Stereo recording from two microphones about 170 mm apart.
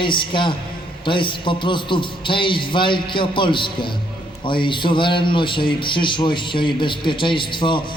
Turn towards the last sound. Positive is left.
turn(degrees=30)  # may be behind; listen again after turning